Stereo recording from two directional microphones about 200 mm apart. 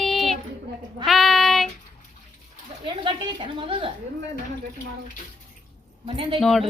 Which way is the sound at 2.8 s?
25° right (ahead or behind).